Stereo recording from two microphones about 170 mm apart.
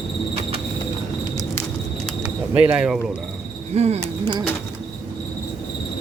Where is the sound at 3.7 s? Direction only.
40° right (ahead or behind).